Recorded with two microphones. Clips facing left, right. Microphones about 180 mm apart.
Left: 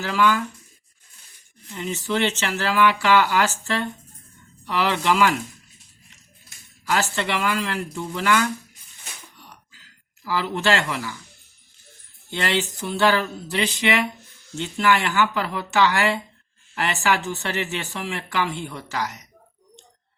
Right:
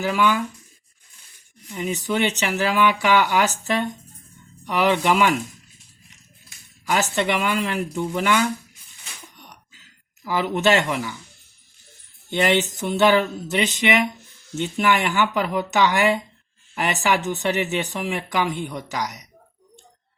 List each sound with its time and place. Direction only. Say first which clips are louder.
0.0 s speech: right 1 dB; 15° right (ahead or behind)
1.7 s speech: right 1 dB; 15° right (ahead or behind)
6.8 s speech: right 2 dB; 15° right (ahead or behind)
9.4 s a sound: right 1 dB; 20° right (ahead or behind)
12.3 s speech: right 5 dB; 15° right (ahead or behind)